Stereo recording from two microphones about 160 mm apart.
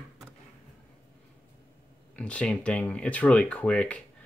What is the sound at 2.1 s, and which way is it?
Speech, 5° left (ahead or behind).